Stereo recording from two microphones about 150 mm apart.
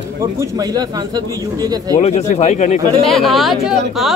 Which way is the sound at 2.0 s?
45° left (ahead or behind).